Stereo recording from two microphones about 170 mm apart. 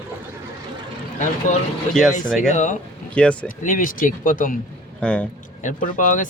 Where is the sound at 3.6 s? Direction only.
50° left (ahead or behind).